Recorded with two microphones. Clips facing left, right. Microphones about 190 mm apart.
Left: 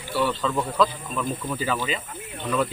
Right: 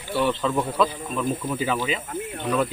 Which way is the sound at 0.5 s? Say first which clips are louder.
Even; 5° right (ahead or behind).